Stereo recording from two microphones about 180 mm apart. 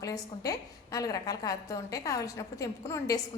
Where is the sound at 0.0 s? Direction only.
20° left (ahead or behind).